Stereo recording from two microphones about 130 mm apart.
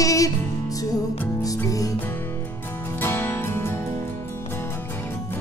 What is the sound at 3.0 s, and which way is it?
Music, 15° left (ahead or behind).